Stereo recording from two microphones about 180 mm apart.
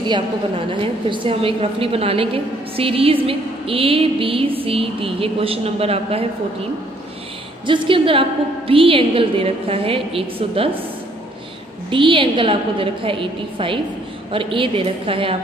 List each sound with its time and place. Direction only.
0.0 s a woman's voice: 25° right (ahead or behind)
7.6 s a woman's voice: 25° right (ahead or behind)
11.9 s a woman's voice: 30° right (ahead or behind)